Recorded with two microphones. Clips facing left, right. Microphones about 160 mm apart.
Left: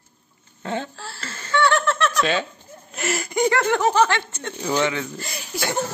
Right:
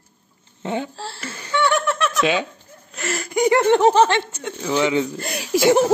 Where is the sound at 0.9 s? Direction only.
30° right (ahead or behind).